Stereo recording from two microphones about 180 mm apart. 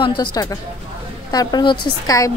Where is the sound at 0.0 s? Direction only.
25° left (ahead or behind).